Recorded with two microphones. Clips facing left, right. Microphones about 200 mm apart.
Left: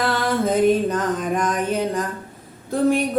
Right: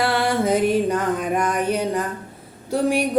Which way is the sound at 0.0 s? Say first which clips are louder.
Right 1 dB; 10° right (ahead or behind).